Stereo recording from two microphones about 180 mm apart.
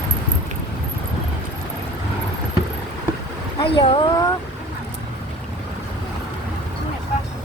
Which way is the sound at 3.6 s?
30° left (ahead or behind).